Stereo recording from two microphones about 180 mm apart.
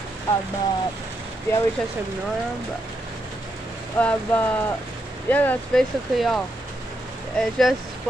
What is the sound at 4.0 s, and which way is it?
Speech, 10° left (ahead or behind).